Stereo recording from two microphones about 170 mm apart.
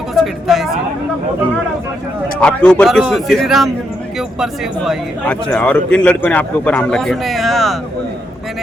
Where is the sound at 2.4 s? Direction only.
5° left (ahead or behind).